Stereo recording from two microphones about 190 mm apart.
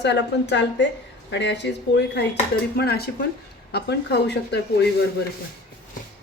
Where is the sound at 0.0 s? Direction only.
65° left (ahead or behind).